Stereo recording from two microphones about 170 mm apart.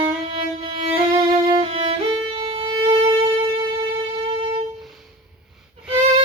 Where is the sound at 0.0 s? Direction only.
30° right (ahead or behind).